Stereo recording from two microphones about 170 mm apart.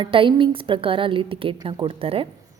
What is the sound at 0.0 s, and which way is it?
Speech, 30° right (ahead or behind).